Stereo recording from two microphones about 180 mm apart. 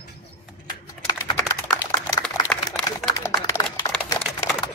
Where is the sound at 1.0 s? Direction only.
20° left (ahead or behind).